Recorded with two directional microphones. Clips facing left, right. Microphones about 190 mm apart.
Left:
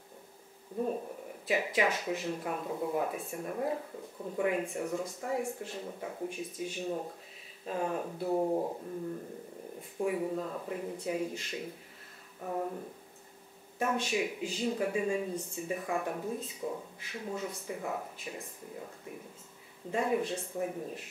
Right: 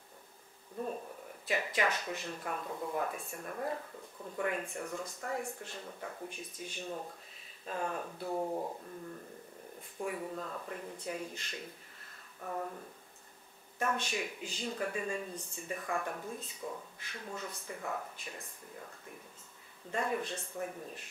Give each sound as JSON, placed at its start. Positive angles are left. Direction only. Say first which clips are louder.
{"t": 0.7, "sound": "speech", "louder": "left 5 dB", "side_deg": 15}
{"t": 9.9, "sound": "speech", "louder": "left 6 dB", "side_deg": 10}
{"t": 12.4, "sound": "speech", "louder": "left 4 dB", "side_deg": 15}
{"t": 13.7, "sound": "speech", "louder": "left 4 dB", "side_deg": 5}